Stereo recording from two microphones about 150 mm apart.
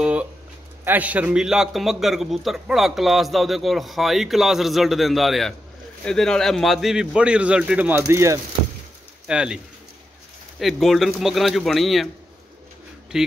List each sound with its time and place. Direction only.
0.0 s a sound: 10° right (ahead or behind)
0.8 s a man's voice: 10° right (ahead or behind)
8.1 s speech: 20° right (ahead or behind)
9.3 s a man's voice: 5° right (ahead or behind)
10.6 s a man's voice: centre (ahead or behind)
13.1 s a man's voice: 5° right (ahead or behind)